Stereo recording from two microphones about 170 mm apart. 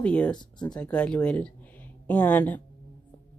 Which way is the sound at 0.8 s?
5° left (ahead or behind).